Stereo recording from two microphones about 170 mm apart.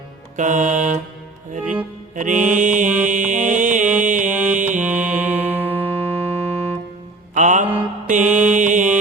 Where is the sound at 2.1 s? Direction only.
50° right (ahead or behind).